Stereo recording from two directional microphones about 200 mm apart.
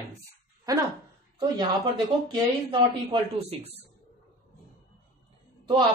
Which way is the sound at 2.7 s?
25° right (ahead or behind).